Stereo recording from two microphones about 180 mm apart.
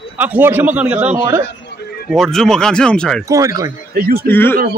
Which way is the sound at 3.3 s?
20° right (ahead or behind).